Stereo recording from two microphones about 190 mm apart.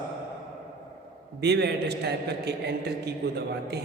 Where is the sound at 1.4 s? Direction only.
60° right (ahead or behind).